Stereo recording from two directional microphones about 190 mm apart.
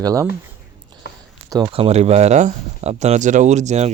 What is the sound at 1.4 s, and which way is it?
Speech, 20° right (ahead or behind).